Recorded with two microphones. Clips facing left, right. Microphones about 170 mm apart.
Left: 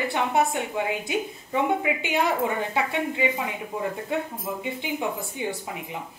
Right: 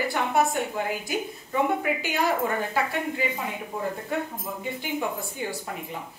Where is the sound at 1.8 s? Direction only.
20° left (ahead or behind).